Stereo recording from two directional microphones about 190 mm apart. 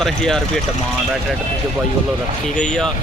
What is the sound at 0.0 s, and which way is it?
Speech, centre (ahead or behind).